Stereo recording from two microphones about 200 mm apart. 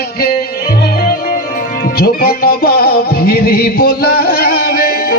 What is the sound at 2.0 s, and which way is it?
Music, 50° left (ahead or behind).